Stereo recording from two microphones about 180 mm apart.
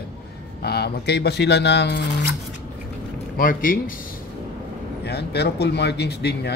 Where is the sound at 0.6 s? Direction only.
65° left (ahead or behind).